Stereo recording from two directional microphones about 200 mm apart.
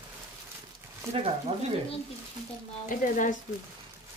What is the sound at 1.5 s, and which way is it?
Speech, 30° right (ahead or behind).